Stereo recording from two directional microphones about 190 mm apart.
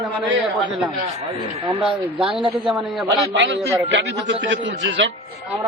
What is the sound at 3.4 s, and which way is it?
A man's voice, 70° right (ahead or behind).